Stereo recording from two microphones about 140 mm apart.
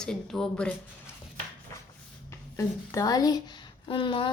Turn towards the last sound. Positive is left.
turn(degrees=35)  # may be behind; listen again after turning